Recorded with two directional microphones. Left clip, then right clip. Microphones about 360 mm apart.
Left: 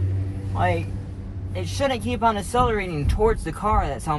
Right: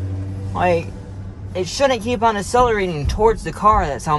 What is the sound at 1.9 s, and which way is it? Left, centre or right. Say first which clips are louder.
Speech: right 5 dB; right.